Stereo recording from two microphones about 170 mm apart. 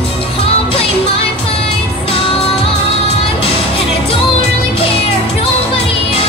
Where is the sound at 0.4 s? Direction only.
35° left (ahead or behind).